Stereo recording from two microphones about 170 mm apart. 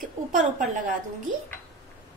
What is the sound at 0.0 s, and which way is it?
Speech, 50° right (ahead or behind).